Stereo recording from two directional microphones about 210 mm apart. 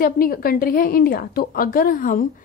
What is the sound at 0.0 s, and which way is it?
A woman's voice, 45° left (ahead or behind).